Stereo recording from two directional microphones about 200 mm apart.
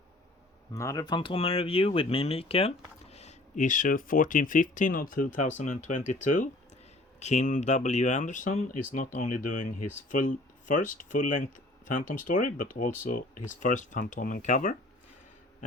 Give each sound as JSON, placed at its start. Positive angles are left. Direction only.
{"t": 0.7, "sound": "speech", "side_deg": 15}